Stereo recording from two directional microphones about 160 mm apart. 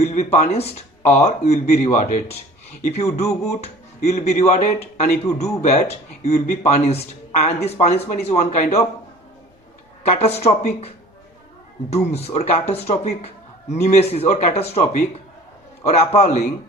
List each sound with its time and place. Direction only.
0.0 s speech: 40° left (ahead or behind)
10.0 s speech: 40° left (ahead or behind)
12.1 s speech: 40° left (ahead or behind)